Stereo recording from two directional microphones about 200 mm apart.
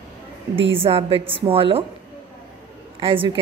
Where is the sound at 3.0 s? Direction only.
25° right (ahead or behind).